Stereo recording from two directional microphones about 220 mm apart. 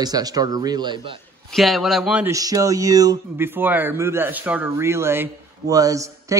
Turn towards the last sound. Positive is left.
turn(degrees=-15)  # may be behind; listen again after turning